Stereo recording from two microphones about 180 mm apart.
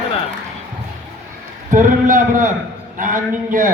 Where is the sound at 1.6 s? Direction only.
45° right (ahead or behind).